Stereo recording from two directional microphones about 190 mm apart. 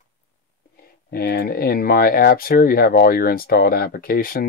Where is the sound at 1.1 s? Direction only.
50° left (ahead or behind).